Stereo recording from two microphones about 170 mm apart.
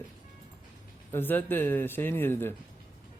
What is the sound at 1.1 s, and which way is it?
A man's voice, 10° left (ahead or behind).